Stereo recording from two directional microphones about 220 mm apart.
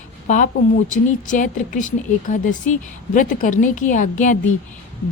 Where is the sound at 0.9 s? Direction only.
35° left (ahead or behind).